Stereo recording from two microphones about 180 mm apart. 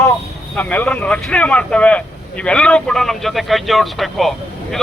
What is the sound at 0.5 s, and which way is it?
Speech, 10° left (ahead or behind).